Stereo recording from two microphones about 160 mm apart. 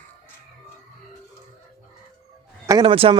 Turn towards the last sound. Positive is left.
turn(degrees=-35)  # may be behind; listen again after turning